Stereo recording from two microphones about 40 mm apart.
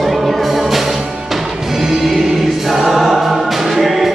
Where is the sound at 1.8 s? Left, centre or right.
Centre.